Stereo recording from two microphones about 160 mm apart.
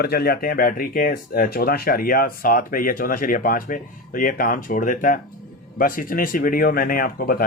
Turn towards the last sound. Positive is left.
turn(degrees=70)  # may be behind; listen again after turning